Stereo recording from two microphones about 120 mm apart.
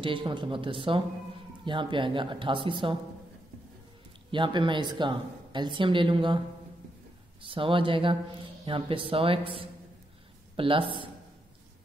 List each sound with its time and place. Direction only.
0.0 s speech: 45° right (ahead or behind)
4.3 s a woman's voice: 40° right (ahead or behind)
7.4 s speech: 45° right (ahead or behind)